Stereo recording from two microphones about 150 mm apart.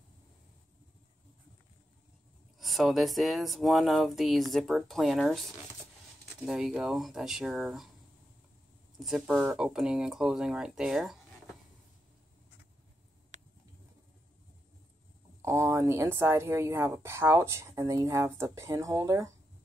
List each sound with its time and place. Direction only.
2.6 s speech: centre (ahead or behind)
9.0 s speech: 5° right (ahead or behind)
15.4 s speech: 20° right (ahead or behind)